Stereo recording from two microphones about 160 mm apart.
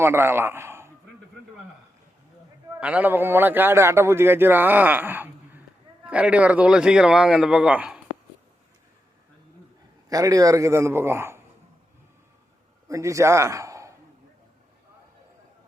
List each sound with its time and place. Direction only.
0.0 s a man's voice: 15° right (ahead or behind)
2.8 s a man's voice: 10° right (ahead or behind)
10.1 s a man's voice: 20° right (ahead or behind)
12.9 s a man's voice: 20° right (ahead or behind)